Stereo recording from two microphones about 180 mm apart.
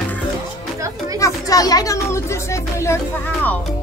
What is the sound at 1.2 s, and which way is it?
Speech, 20° left (ahead or behind).